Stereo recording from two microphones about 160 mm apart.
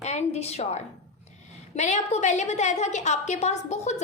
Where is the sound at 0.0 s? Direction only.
45° left (ahead or behind).